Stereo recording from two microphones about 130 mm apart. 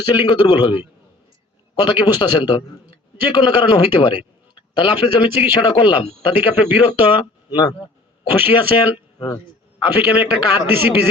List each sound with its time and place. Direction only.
0.0 s speech: 40° left (ahead or behind)
6.5 s a man's voice: 15° right (ahead or behind)
6.7 s speech: 45° left (ahead or behind)
10.7 s a man's voice: 15° right (ahead or behind)